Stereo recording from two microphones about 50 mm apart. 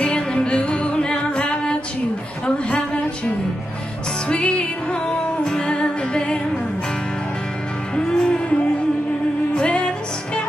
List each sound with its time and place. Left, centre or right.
0.0 s music: centre
2.4 s a sound: left
4.3 s music: left
7.9 s music: centre
9.6 s music: left